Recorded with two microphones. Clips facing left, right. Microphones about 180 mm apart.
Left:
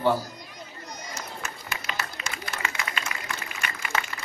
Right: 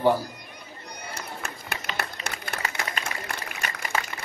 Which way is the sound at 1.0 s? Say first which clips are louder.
Right 2 dB; 60° right (ahead or behind).